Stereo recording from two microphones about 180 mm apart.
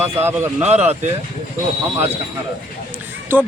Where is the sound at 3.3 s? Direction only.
10° right (ahead or behind).